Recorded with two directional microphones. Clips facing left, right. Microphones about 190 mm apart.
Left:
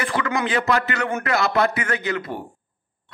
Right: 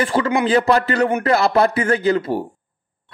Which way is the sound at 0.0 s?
30° right (ahead or behind).